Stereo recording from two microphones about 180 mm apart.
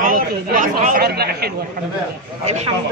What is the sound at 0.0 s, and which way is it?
Speech, 45° right (ahead or behind).